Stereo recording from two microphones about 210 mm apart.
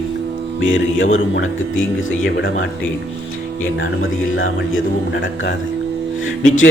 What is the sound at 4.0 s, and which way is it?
Speech, 70° left (ahead or behind).